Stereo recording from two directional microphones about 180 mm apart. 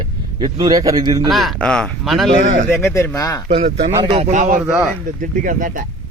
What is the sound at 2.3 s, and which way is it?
Speech, 40° right (ahead or behind).